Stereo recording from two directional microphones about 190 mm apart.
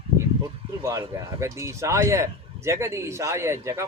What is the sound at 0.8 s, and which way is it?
Speech, 15° right (ahead or behind).